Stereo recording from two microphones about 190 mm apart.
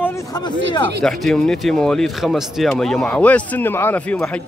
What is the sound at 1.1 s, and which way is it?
A man's voice, 5° left (ahead or behind).